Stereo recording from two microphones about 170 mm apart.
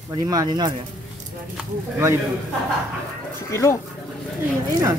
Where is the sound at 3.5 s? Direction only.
15° left (ahead or behind).